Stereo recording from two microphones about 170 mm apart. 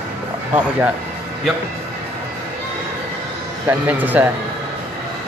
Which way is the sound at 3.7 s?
10° right (ahead or behind).